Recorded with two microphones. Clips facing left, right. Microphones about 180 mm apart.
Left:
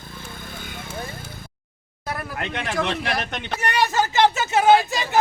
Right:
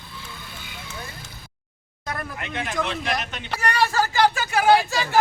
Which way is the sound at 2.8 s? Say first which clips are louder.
Left 2 dB; 70° left (ahead or behind).